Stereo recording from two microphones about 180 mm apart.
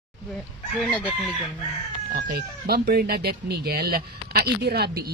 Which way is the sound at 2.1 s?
60° right (ahead or behind).